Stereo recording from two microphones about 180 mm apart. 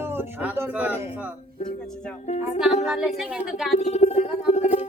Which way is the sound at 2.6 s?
5° right (ahead or behind).